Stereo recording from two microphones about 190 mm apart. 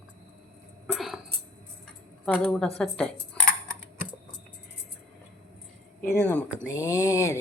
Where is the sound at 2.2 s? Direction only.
5° left (ahead or behind).